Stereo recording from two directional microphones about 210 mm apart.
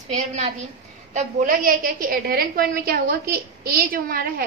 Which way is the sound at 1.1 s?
35° right (ahead or behind).